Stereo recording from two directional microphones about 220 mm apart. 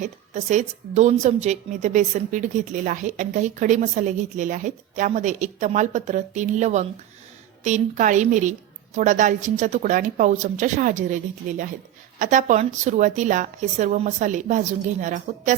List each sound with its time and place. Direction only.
0.5 s a woman's voice: 30° right (ahead or behind)